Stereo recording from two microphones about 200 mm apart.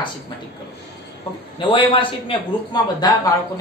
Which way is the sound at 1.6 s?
25° left (ahead or behind).